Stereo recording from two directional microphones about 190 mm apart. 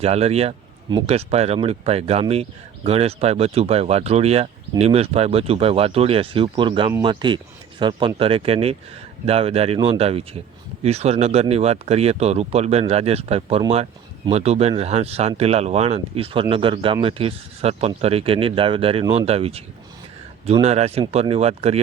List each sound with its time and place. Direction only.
0.0 s speech: 35° right (ahead or behind)